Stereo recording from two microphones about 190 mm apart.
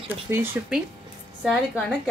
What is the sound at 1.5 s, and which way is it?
Speech, centre (ahead or behind).